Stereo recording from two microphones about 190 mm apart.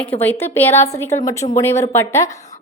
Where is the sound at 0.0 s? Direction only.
10° left (ahead or behind).